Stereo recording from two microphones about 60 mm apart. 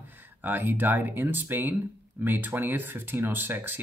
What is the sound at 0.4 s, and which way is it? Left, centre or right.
Speech, right.